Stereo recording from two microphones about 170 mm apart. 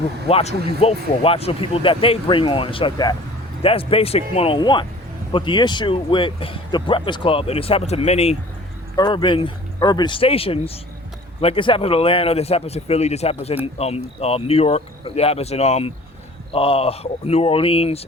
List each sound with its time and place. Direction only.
0.3 s speech: 35° left (ahead or behind)
9.0 s speech: 25° left (ahead or behind)